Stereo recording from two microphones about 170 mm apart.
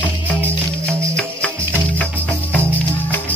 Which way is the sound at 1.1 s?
10° left (ahead or behind).